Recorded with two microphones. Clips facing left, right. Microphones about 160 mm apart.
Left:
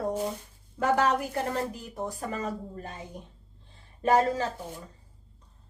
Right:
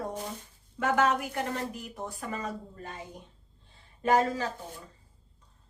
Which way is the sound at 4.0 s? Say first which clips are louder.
Left 2 dB; 30° left (ahead or behind).